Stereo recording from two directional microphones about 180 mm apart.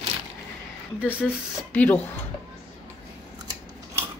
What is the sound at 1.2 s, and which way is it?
Speech, 10° left (ahead or behind).